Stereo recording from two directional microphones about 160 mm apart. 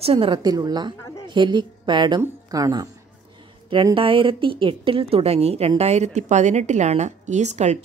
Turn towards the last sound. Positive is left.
turn(degrees=-45)  # may be behind; listen again after turning